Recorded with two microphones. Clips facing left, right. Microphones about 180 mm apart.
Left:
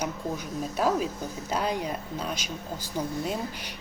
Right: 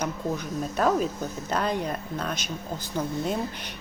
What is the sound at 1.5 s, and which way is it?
Speech, 10° left (ahead or behind).